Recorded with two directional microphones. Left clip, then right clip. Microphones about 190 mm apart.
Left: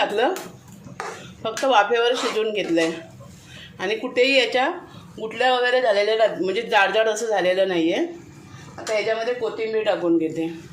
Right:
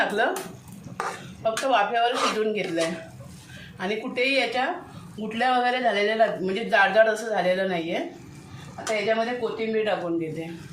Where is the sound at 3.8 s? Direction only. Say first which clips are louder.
Left 5 dB; 55° left (ahead or behind).